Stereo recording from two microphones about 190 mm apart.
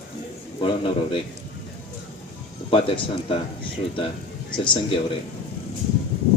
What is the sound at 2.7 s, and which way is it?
Speech, 30° left (ahead or behind).